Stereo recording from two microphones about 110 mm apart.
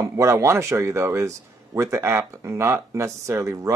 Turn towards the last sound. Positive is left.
turn(degrees=-30)  # may be behind; listen again after turning